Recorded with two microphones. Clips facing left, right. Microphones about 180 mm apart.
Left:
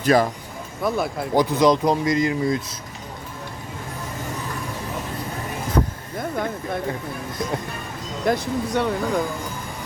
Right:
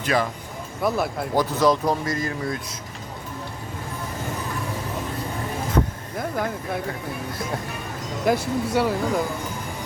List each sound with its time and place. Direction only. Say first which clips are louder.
0.0 s speech: left 5 dB; 40° left (ahead or behind)
0.8 s speech: even; centre (ahead or behind)
1.4 s speech: left 3 dB; 15° left (ahead or behind)
6.1 s speech: even; 5° right (ahead or behind)
8.2 s speech: even; 5° right (ahead or behind)